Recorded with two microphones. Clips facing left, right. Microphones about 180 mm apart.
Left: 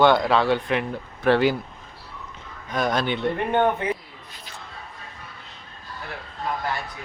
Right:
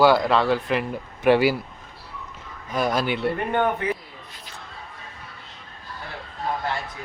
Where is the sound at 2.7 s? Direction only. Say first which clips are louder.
Even; 5° right (ahead or behind).